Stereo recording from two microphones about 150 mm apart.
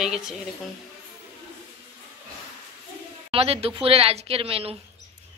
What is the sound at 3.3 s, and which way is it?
A woman's voice, 40° right (ahead or behind).